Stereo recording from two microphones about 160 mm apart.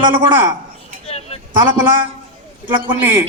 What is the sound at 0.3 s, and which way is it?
Speech, 15° right (ahead or behind).